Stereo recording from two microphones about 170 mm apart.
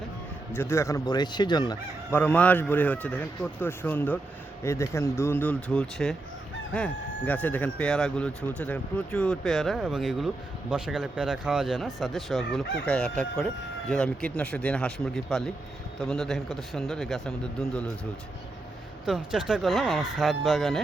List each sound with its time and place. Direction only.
0.5 s speech: 15° left (ahead or behind)
2.1 s a man's voice: 10° left (ahead or behind)
19.0 s speech: 5° right (ahead or behind)